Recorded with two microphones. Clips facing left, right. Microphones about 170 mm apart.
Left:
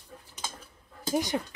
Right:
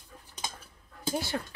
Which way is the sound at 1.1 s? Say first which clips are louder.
Left 5 dB; 15° left (ahead or behind).